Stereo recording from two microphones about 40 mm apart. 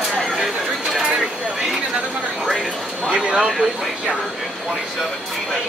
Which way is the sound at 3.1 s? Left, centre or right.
Right.